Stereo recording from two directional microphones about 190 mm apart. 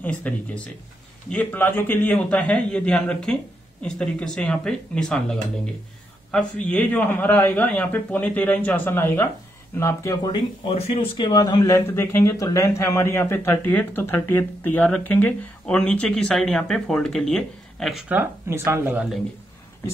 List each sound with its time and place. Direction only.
0.0 s speech: 10° left (ahead or behind)
1.3 s speech: 10° left (ahead or behind)
10.7 s speech: 30° left (ahead or behind); by 19.1 s 10° right (ahead or behind)